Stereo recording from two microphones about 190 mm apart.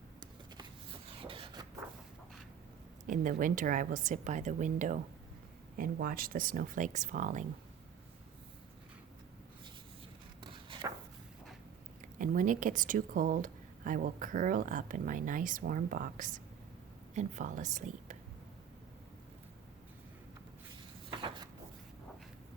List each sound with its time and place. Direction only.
1.2 s beatboxing: 25° right (ahead or behind)
3.1 s speech: 45° right (ahead or behind)
10.4 s walk: 25° right (ahead or behind)
12.2 s a woman's voice: 45° right (ahead or behind)
21.1 s a sound: 25° right (ahead or behind)